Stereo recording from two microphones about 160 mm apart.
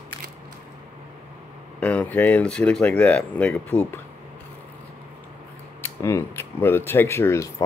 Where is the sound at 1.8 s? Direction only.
10° left (ahead or behind).